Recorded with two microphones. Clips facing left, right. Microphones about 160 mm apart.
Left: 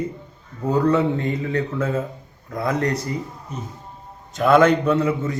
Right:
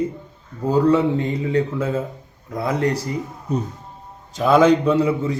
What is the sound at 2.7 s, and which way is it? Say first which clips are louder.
Speech: right 3 dB; 30° right (ahead or behind).